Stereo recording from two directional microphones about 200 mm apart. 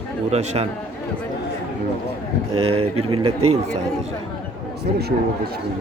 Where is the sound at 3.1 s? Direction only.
25° right (ahead or behind).